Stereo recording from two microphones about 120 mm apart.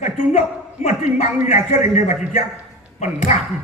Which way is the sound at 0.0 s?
70° left (ahead or behind).